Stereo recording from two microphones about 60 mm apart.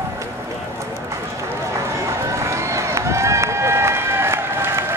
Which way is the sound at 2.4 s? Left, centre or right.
Right.